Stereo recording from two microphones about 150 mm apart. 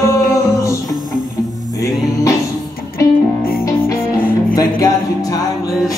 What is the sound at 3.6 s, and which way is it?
Music, 15° left (ahead or behind).